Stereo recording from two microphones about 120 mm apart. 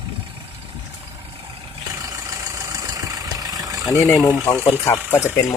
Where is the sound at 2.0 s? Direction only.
30° right (ahead or behind).